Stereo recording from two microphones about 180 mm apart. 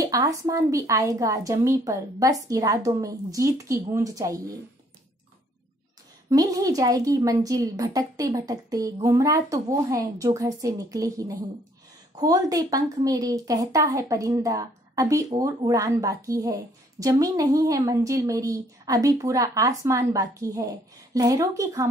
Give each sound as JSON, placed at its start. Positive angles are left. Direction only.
{"t": 0.0, "sound": "a woman's voice", "side_deg": -20}
{"t": 6.3, "sound": "a woman's voice", "side_deg": -20}